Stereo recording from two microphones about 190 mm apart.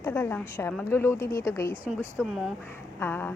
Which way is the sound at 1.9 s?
Centre (ahead or behind).